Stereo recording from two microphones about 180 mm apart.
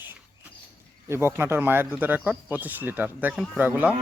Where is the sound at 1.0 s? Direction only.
15° right (ahead or behind).